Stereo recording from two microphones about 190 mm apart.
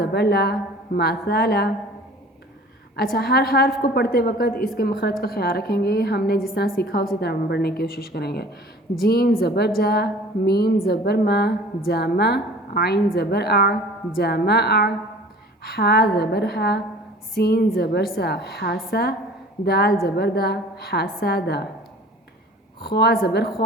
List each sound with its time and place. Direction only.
0.0 s a woman's voice: 55° left (ahead or behind)
2.9 s a woman's voice: 55° left (ahead or behind)
22.8 s a woman's voice: 55° left (ahead or behind)